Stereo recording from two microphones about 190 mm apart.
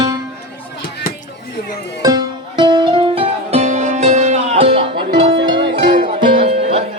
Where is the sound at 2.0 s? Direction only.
20° right (ahead or behind).